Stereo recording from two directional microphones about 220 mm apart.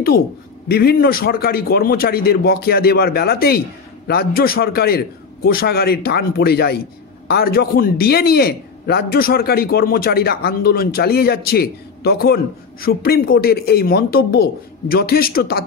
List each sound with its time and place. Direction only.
0.7 s a man's voice: 45° left (ahead or behind)